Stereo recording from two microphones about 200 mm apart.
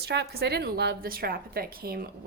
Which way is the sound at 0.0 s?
55° right (ahead or behind).